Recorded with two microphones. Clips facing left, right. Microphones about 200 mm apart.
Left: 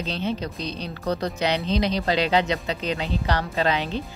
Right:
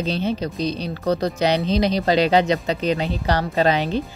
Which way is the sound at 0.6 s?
10° right (ahead or behind).